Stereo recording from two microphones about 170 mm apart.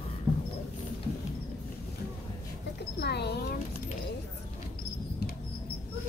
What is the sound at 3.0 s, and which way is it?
Speech, 75° left (ahead or behind).